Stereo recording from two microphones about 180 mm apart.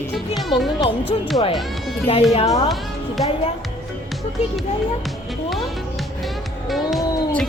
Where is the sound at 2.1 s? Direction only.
30° left (ahead or behind).